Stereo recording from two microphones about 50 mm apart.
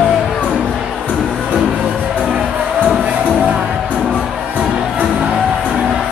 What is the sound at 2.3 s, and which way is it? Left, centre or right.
Music, right.